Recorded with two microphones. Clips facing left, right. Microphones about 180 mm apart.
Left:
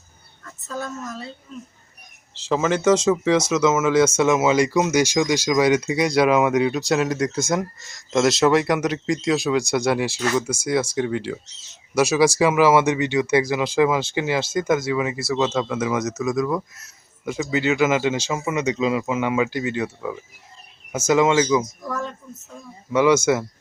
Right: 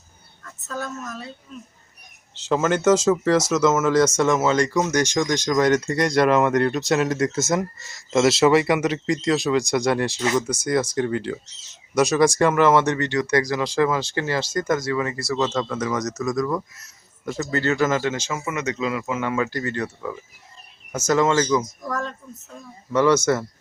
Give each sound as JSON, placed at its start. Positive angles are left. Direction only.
{"t": 0.4, "sound": "a woman's voice", "side_deg": 10}
{"t": 2.3, "sound": "speech", "side_deg": 0}
{"t": 14.5, "sound": "speech", "side_deg": 5}